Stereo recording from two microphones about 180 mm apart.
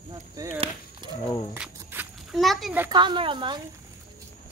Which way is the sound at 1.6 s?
5° right (ahead or behind).